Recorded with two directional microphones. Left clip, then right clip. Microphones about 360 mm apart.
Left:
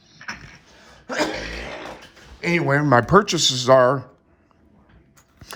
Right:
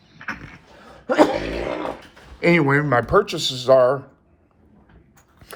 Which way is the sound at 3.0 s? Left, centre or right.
Left.